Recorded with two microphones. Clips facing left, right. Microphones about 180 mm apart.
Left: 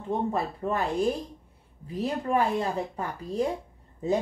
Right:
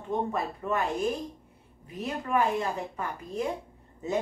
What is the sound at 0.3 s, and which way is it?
Speech, 30° left (ahead or behind).